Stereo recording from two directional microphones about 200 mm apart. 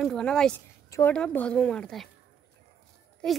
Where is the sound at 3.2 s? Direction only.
5° left (ahead or behind).